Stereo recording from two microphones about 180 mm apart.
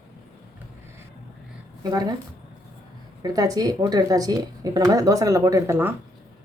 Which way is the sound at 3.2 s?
20° right (ahead or behind).